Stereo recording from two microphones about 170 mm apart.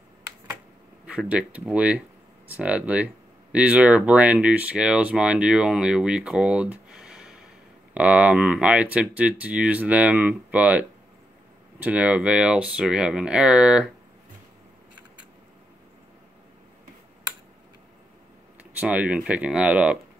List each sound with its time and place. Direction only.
1.0 s speech: 5° right (ahead or behind)
18.6 s speech: 10° right (ahead or behind)